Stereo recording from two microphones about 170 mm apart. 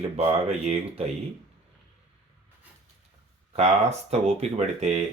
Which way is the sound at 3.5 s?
40° right (ahead or behind).